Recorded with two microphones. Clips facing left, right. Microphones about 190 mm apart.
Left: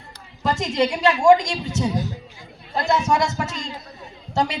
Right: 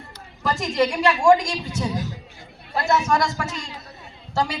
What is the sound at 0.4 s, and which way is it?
A woman's voice, 25° left (ahead or behind).